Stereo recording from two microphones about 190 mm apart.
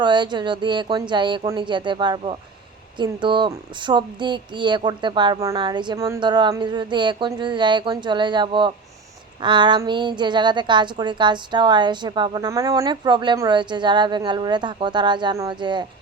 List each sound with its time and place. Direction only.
0.0 s a woman's voice: 25° right (ahead or behind)